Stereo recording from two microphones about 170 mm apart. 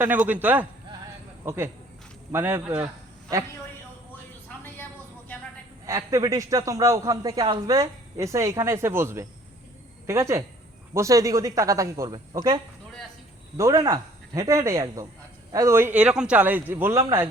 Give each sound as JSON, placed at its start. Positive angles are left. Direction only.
{"t": 0.0, "sound": "a man's voice", "side_deg": -10}
{"t": 4.4, "sound": "a sound", "side_deg": 10}
{"t": 5.8, "sound": "a man's voice", "side_deg": -20}
{"t": 13.6, "sound": "a man's voice", "side_deg": -20}